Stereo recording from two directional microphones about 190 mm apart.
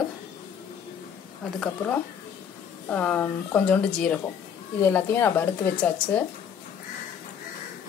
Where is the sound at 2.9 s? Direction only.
5° left (ahead or behind).